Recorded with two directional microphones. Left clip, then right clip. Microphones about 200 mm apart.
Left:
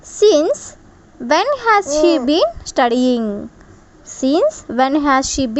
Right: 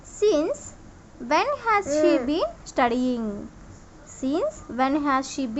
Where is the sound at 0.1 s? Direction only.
40° left (ahead or behind).